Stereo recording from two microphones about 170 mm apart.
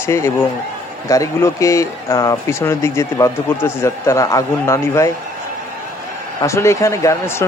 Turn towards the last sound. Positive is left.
turn(degrees=15)  # may be behind; listen again after turning